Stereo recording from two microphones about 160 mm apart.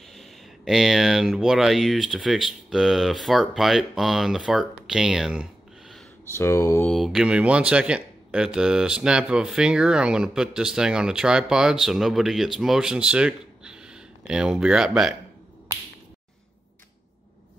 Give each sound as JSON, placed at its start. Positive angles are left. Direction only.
{"t": 0.1, "sound": "speech", "side_deg": 0}
{"t": 6.3, "sound": "mantra", "side_deg": 15}
{"t": 6.9, "sound": "speech", "side_deg": 0}